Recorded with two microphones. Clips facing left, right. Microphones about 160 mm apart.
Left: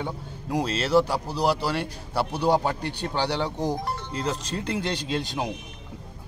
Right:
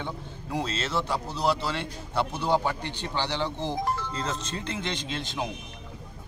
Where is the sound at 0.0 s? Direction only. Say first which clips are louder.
Left 3 dB; 10° left (ahead or behind).